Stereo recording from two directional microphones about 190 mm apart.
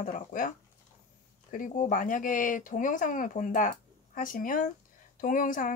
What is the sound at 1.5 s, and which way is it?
Speech, 45° left (ahead or behind).